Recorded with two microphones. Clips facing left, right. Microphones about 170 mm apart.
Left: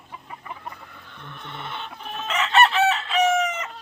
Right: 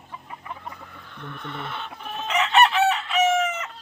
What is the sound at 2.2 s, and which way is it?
Chicken, 15° right (ahead or behind).